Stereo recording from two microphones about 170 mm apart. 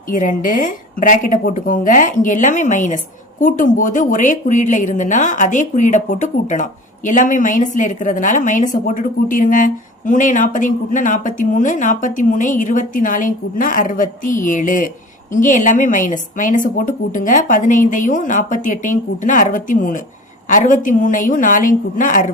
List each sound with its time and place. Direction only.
0.1 s a woman's voice: 50° left (ahead or behind)